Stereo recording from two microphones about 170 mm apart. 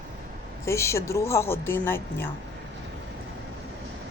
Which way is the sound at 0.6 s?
15° left (ahead or behind).